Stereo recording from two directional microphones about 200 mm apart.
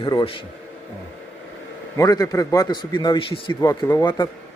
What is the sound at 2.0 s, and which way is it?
A man's voice, 20° left (ahead or behind).